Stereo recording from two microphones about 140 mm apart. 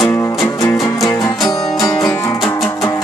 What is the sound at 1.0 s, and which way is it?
Music, 25° left (ahead or behind).